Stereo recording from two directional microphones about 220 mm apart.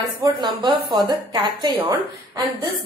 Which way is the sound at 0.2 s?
20° right (ahead or behind).